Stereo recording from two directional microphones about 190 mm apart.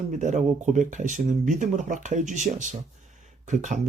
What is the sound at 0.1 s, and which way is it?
Speech, 40° right (ahead or behind).